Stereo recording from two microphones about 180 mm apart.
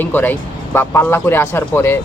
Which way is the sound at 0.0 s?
10° left (ahead or behind).